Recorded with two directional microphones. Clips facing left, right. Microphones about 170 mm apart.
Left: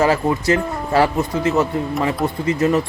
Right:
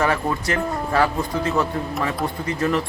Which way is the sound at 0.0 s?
25° left (ahead or behind).